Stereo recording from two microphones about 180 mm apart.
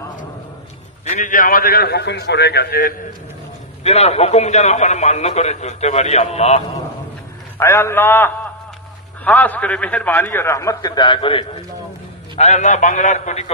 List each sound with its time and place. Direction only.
1.0 s a man's voice: 45° left (ahead or behind); by 2.9 s 60° left (ahead or behind)
3.8 s a man's voice: 35° left (ahead or behind)
7.5 s a man's voice: 15° left (ahead or behind)
12.4 s a man's voice: 40° left (ahead or behind)